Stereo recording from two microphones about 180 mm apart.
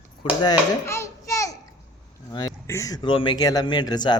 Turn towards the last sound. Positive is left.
turn(degrees=25)  # may be behind; listen again after turning